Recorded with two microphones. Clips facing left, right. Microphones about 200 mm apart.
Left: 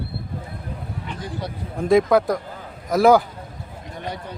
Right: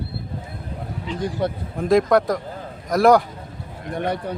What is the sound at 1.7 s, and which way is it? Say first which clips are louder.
A man's voice: left 1 dB; centre (ahead or behind).